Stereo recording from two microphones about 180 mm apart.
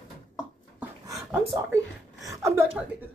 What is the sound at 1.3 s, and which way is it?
Speech, 15° right (ahead or behind).